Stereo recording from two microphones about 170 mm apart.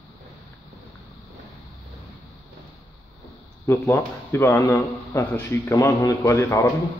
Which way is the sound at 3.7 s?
15° left (ahead or behind).